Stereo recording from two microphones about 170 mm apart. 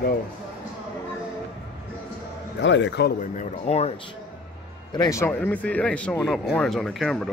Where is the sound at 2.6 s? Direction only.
90° left.